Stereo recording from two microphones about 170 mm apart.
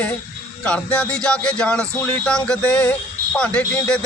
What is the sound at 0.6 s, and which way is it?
Speech, 5° left (ahead or behind).